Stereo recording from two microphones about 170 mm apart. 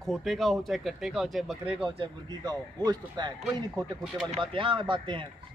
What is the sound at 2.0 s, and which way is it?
Speech, 25° right (ahead or behind).